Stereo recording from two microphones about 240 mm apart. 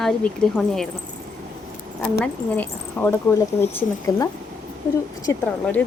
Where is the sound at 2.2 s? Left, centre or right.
Centre.